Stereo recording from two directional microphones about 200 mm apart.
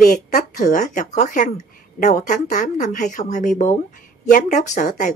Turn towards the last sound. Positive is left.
turn(degrees=40)  # may be behind; listen again after turning